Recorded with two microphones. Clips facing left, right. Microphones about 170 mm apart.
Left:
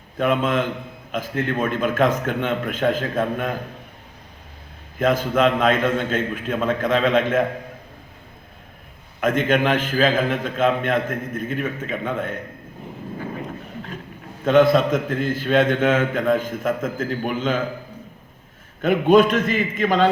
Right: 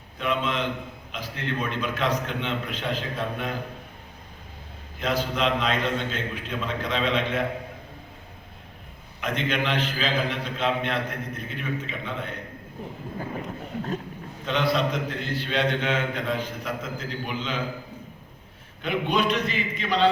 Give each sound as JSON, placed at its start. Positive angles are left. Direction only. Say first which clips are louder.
{"t": 0.2, "sound": "a man's voice", "louder": "left 7 dB", "side_deg": 50}
{"t": 4.9, "sound": "a man's voice", "louder": "left 7 dB", "side_deg": 50}
{"t": 9.2, "sound": "a man's voice", "louder": "left 8 dB", "side_deg": 50}
{"t": 14.4, "sound": "a man's voice", "louder": "left 9 dB", "side_deg": 50}
{"t": 18.8, "sound": "a man's voice", "louder": "left 10 dB", "side_deg": 45}